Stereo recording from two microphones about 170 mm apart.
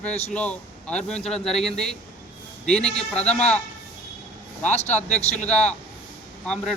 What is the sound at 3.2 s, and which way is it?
Speech, 40° left (ahead or behind).